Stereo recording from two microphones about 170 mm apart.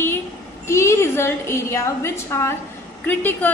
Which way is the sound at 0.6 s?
15° left (ahead or behind).